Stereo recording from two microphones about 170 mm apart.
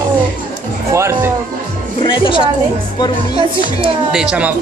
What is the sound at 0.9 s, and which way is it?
Speech, 15° right (ahead or behind).